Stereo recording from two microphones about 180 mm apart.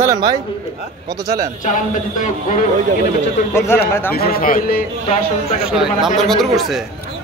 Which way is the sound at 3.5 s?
15° left (ahead or behind).